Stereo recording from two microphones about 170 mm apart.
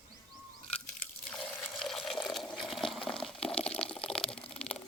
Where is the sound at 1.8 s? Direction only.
Centre (ahead or behind).